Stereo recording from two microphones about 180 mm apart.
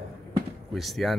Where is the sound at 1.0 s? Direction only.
Centre (ahead or behind).